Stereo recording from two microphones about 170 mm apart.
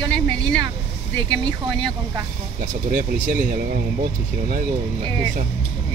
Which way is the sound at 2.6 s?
45° right (ahead or behind).